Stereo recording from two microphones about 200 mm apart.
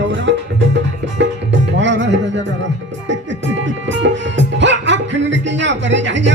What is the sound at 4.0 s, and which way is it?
Speech, 65° right (ahead or behind).